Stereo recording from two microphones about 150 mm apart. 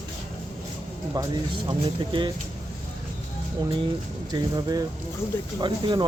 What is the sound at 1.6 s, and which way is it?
Speech, 30° right (ahead or behind).